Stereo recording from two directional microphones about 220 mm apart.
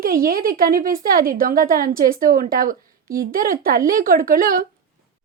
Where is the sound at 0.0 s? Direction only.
40° right (ahead or behind).